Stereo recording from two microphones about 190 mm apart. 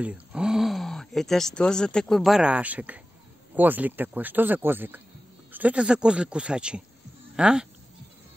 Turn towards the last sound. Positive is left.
turn(degrees=-5)  # may be behind; listen again after turning